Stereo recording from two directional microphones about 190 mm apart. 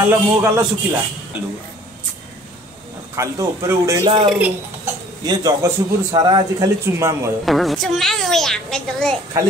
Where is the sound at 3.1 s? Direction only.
15° right (ahead or behind).